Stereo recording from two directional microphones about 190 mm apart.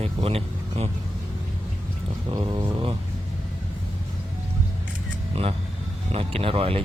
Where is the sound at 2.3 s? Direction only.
25° right (ahead or behind).